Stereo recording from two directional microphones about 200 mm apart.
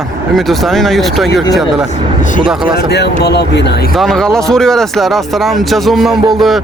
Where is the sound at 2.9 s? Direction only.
55° left (ahead or behind).